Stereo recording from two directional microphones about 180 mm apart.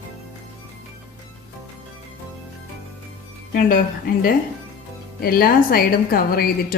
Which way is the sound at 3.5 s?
50° left (ahead or behind).